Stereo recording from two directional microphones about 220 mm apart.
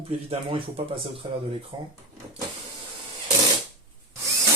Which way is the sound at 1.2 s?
20° right (ahead or behind).